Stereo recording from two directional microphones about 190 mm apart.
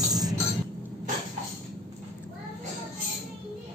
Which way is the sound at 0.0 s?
20° right (ahead or behind).